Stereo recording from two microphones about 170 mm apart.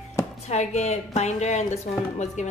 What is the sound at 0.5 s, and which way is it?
A woman's voice, 40° left (ahead or behind).